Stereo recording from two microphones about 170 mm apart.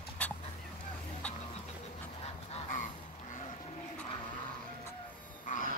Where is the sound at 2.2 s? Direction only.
45° left (ahead or behind).